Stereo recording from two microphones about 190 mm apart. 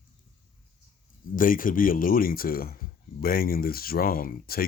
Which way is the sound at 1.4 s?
45° left (ahead or behind).